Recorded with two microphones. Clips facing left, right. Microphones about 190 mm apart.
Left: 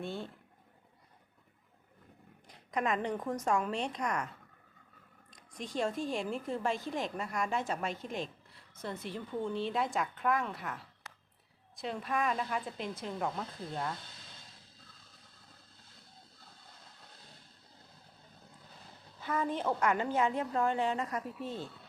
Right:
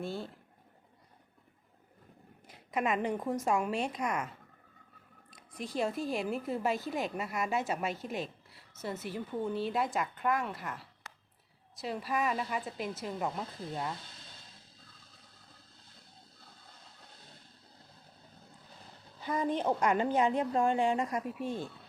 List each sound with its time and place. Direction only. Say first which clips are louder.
0.0 s speech: right 1 dB; centre (ahead or behind)
2.5 s a woman's voice: right 1 dB; 10° right (ahead or behind)
5.3 s a woman's voice: right 1 dB; 5° right (ahead or behind)
19.2 s a woman's voice: right 2 dB; 15° right (ahead or behind)